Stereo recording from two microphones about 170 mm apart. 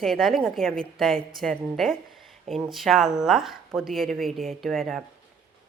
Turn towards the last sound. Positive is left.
turn(degrees=0)  # may be behind; listen again after turning